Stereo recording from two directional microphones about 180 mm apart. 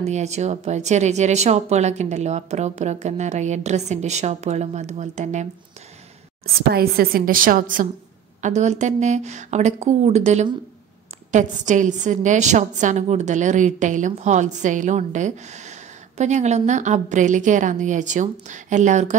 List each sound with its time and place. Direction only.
0.0 s speech: 40° right (ahead or behind)
6.4 s a woman's voice: 55° right (ahead or behind); by 19.1 s 40° right (ahead or behind)